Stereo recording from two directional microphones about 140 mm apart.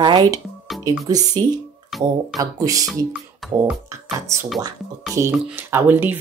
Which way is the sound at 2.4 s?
25° right (ahead or behind).